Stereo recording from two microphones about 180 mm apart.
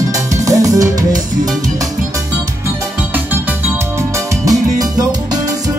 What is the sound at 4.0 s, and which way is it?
Music, 15° right (ahead or behind).